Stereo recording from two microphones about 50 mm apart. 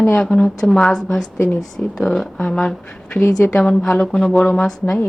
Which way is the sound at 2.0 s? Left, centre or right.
Centre.